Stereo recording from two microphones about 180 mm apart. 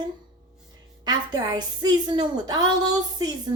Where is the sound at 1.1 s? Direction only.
20° right (ahead or behind).